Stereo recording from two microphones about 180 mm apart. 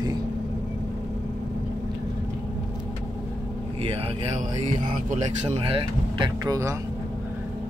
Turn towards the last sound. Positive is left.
turn(degrees=-20)  # may be behind; listen again after turning